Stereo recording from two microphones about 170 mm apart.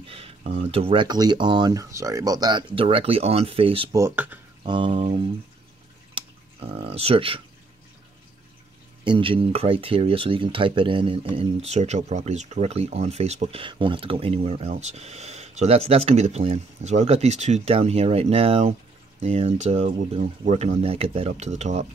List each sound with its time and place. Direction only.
0.1 s speech: 35° right (ahead or behind)
3.9 s speech: 15° right (ahead or behind)
4.6 s a sound: 30° right (ahead or behind)
6.1 s speech: 35° right (ahead or behind)
9.0 s speech: 30° right (ahead or behind)